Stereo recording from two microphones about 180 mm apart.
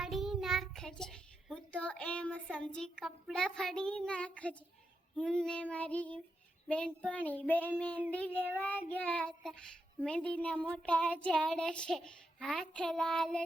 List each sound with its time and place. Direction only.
0.0 s child singing: centre (ahead or behind)